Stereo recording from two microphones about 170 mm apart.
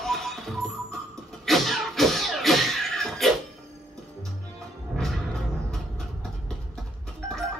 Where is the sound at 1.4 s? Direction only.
Centre (ahead or behind).